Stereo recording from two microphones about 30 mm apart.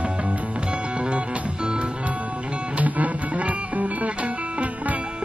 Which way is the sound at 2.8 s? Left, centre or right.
Right.